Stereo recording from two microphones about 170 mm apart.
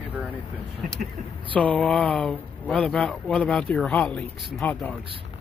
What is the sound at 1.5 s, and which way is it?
Speech, 10° left (ahead or behind).